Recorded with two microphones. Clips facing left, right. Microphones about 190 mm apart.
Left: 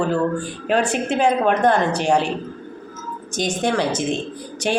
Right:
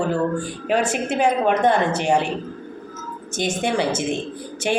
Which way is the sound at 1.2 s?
15° right (ahead or behind).